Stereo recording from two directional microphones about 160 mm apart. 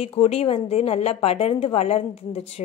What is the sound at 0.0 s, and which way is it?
A woman's voice, 35° left (ahead or behind).